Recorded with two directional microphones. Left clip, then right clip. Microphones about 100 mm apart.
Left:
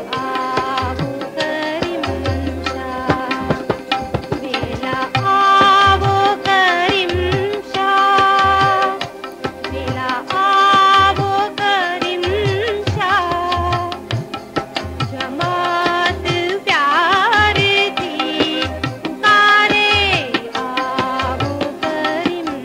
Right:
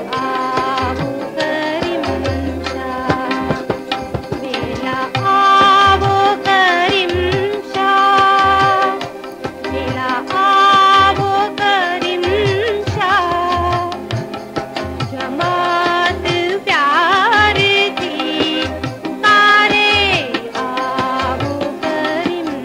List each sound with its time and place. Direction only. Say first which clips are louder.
0.1 s music: right 2 dB; 30° left (ahead or behind)
10.0 s music: right 2 dB; 30° left (ahead or behind)
15.3 s music: right 2 dB; 35° left (ahead or behind)